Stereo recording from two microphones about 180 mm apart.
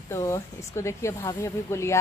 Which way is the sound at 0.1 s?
15° left (ahead or behind).